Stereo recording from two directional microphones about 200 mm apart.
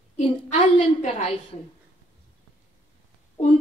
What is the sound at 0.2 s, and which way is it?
Speech, 40° left (ahead or behind).